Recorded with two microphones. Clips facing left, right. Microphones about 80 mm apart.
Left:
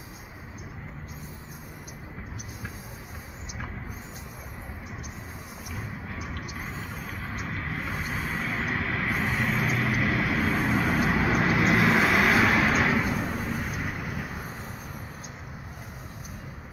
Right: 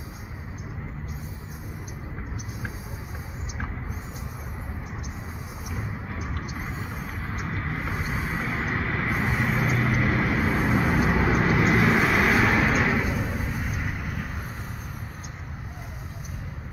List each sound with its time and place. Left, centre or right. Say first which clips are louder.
6.6 s vehicle: right 2 dB; centre
7.3 s vehicle: right 3 dB; right
7.7 s vehicle: right 1 dB; centre